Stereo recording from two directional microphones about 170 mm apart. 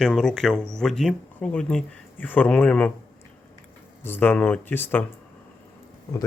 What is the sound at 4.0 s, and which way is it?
Speech, 10° left (ahead or behind).